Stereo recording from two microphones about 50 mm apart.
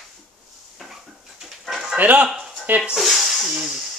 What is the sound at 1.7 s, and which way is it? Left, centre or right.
Dog, centre.